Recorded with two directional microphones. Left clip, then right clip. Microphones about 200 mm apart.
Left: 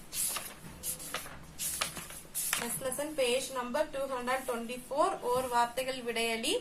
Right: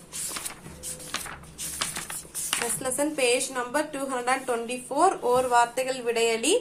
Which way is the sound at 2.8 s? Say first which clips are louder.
Right 6 dB; 30° right (ahead or behind).